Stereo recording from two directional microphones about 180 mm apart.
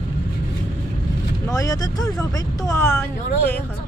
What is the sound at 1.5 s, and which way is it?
Speech, 20° left (ahead or behind).